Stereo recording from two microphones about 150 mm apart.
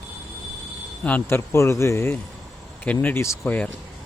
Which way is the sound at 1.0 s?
15° left (ahead or behind).